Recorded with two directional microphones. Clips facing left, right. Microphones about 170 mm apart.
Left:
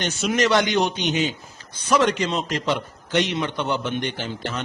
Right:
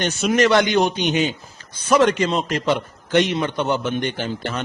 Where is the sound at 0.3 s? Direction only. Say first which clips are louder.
Right 3 dB; 55° right (ahead or behind).